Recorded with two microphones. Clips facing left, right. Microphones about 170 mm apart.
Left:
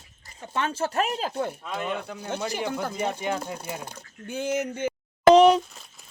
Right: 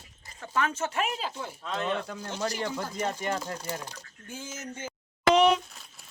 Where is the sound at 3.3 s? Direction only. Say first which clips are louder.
Left 3 dB; centre (ahead or behind).